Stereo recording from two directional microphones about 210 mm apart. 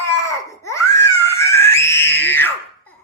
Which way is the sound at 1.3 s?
15° left (ahead or behind).